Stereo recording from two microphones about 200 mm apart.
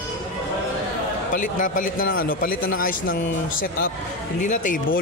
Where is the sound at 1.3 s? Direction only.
40° left (ahead or behind).